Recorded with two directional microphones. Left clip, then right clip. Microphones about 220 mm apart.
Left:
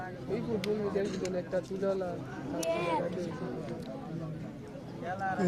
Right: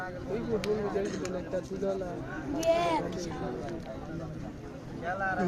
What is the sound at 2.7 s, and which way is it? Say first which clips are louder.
Speech: right 5 dB; 55° right (ahead or behind).